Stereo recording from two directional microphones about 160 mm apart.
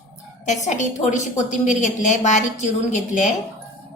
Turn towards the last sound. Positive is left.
turn(degrees=45)  # may be behind; listen again after turning